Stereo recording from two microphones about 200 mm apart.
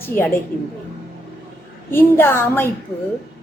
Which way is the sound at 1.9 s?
10° left (ahead or behind).